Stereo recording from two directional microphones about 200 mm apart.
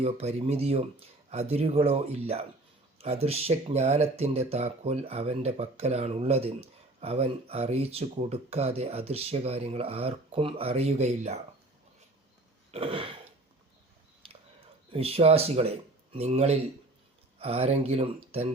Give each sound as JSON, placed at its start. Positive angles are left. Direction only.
{"t": 0.0, "sound": "speech", "side_deg": -30}
{"t": 12.7, "sound": "speech", "side_deg": -25}
{"t": 14.9, "sound": "speech", "side_deg": -30}